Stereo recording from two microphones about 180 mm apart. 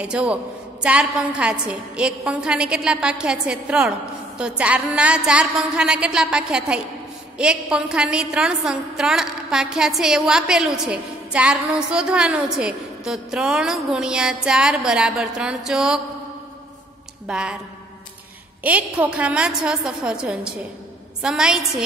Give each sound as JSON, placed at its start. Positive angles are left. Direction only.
{"t": 0.0, "sound": "a man's voice", "side_deg": -5}
{"t": 17.3, "sound": "a woman's voice", "side_deg": -5}
{"t": 18.6, "sound": "a woman's voice", "side_deg": -10}